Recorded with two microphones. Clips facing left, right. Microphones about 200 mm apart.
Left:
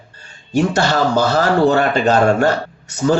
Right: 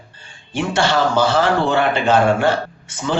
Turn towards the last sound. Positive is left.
turn(degrees=40)  # may be behind; listen again after turning